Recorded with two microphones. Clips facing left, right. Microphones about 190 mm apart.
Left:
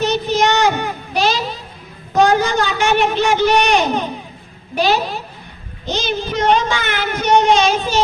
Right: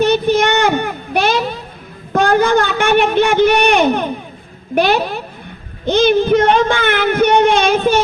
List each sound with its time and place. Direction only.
0.0 s child singing: 55° right (ahead or behind)
2.1 s a sound: 55° right (ahead or behind)
4.7 s speech: 60° right (ahead or behind)